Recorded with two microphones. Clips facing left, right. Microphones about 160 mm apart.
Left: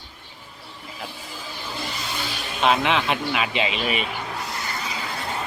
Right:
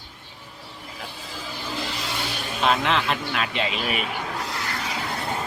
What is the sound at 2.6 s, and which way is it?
Speech, 5° left (ahead or behind).